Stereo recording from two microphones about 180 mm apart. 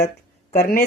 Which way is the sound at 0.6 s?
55° left (ahead or behind).